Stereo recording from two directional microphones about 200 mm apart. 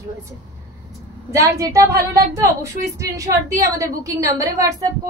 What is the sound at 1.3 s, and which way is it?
A woman's voice, 15° right (ahead or behind).